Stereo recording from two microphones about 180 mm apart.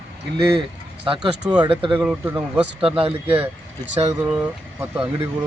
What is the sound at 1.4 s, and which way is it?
Speech, 5° right (ahead or behind).